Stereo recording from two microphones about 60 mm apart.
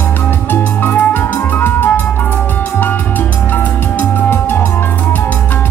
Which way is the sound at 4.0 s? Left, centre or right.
Left.